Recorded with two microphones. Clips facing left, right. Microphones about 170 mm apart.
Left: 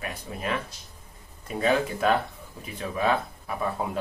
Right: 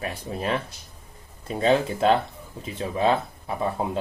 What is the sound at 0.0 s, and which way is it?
Speech, 30° right (ahead or behind).